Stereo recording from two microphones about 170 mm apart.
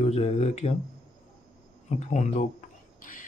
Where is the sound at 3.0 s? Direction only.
55° left (ahead or behind).